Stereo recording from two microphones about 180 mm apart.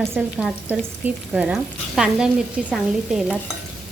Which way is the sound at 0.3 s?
5° right (ahead or behind).